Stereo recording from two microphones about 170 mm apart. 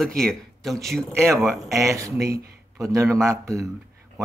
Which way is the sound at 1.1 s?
15° right (ahead or behind).